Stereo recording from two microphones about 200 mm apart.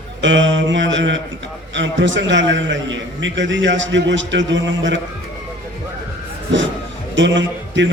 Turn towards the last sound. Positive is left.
turn(degrees=-65)  # may be behind; listen again after turning